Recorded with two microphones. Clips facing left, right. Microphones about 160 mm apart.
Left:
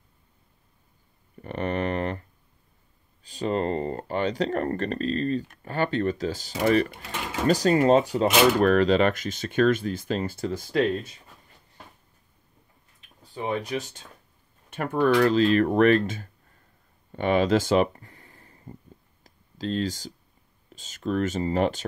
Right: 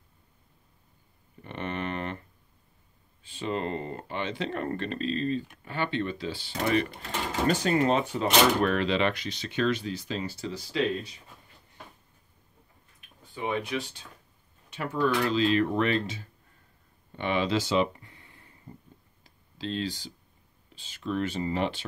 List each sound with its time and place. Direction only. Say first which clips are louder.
1.4 s a sound: left 6 dB; 40° left (ahead or behind)
3.3 s speech: left 5 dB; 40° left (ahead or behind)
13.3 s speech: left 2 dB; 40° left (ahead or behind)
17.1 s a sound: left 6 dB; 45° left (ahead or behind)
19.2 s clicking: left 4 dB; 40° left (ahead or behind)
20.7 s speech: left 4 dB; 45° left (ahead or behind)